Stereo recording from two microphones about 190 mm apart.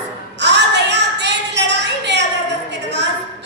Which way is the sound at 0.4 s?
65° right (ahead or behind).